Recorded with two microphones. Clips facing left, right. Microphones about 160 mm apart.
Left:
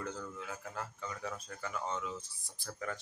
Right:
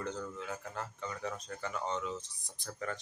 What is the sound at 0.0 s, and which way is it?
Speech, 5° left (ahead or behind).